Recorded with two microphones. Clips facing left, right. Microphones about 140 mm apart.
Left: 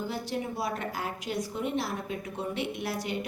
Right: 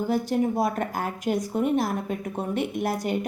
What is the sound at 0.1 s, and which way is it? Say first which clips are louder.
A woman's voice: right 10 dB; 45° right (ahead or behind).